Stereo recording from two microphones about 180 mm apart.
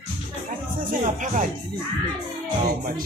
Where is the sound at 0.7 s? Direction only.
45° right (ahead or behind).